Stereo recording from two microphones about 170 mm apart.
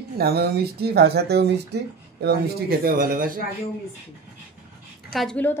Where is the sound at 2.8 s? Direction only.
55° right (ahead or behind).